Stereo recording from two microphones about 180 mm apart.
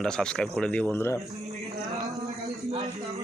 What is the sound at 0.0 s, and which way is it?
Speech, 5° left (ahead or behind).